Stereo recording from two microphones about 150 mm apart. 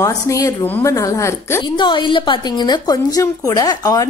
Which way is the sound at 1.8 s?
30° left (ahead or behind).